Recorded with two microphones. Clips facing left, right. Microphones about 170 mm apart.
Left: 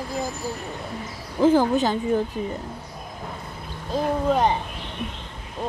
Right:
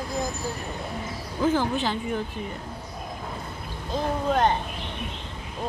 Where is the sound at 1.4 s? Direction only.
40° left (ahead or behind).